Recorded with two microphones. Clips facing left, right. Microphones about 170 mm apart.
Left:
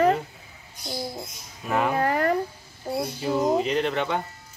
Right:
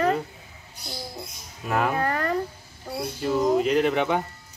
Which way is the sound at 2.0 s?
25° left (ahead or behind).